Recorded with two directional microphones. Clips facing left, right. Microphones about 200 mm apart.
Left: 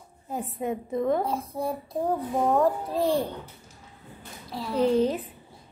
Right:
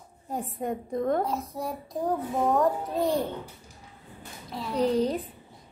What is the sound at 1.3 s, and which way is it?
Speech, 30° left (ahead or behind).